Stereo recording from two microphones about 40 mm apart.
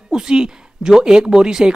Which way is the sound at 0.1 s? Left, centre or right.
Centre.